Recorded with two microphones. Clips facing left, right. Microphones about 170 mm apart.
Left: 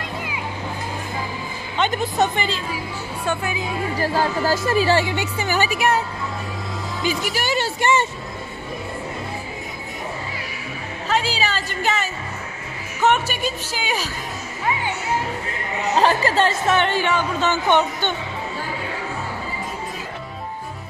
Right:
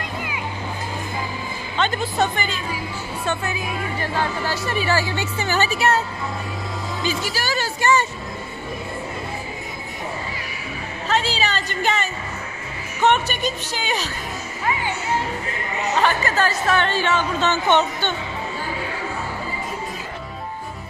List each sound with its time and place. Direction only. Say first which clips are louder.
1.8 s speech: left 1 dB; 15° left (ahead or behind)
3.3 s speech: left 1 dB; 10° left (ahead or behind)
4.0 s speech: left 5 dB; 35° left (ahead or behind)
5.0 s speech: left 1 dB; 15° left (ahead or behind)
7.1 s speech: left 3 dB; 20° left (ahead or behind)
11.1 s a woman's voice: even; 10° left (ahead or behind)
16.0 s speech: left 3 dB; 30° left (ahead or behind); by 18.1 s 10° left (ahead or behind)